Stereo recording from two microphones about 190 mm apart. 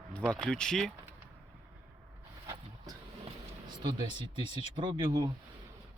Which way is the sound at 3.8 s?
25° right (ahead or behind).